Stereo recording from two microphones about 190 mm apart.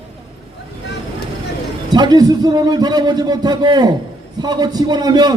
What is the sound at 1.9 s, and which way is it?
A man's voice, 20° right (ahead or behind).